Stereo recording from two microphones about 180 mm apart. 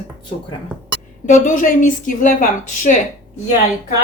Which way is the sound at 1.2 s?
45° left (ahead or behind).